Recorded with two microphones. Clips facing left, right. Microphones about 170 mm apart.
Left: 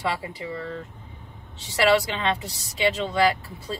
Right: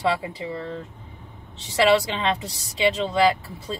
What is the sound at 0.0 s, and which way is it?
Speech, 25° right (ahead or behind).